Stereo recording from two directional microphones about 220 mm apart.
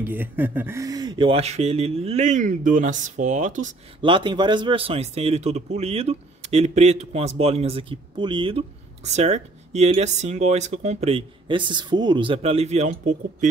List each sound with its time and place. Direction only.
0.0 s speech: 10° right (ahead or behind); by 3.7 s 35° right (ahead or behind)
4.0 s speech: 20° right (ahead or behind)